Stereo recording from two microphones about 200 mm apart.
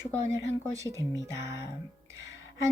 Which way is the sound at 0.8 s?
15° right (ahead or behind).